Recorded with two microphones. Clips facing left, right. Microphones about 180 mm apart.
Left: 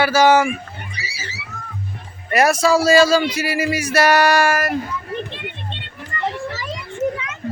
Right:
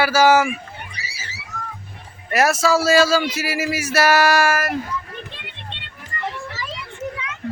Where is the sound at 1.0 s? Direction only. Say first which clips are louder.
Left 3 dB; 50° right (ahead or behind).